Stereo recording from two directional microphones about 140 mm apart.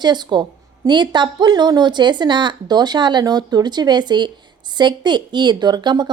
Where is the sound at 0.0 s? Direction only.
30° right (ahead or behind).